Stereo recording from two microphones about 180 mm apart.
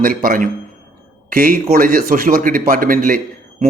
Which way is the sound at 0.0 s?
50° right (ahead or behind).